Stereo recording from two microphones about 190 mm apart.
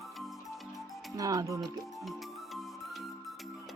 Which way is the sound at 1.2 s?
20° right (ahead or behind).